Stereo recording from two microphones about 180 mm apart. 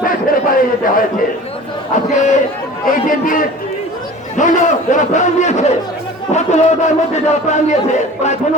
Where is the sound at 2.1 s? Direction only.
40° left (ahead or behind).